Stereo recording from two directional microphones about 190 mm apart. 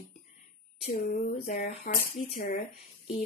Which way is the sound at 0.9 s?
50° left (ahead or behind).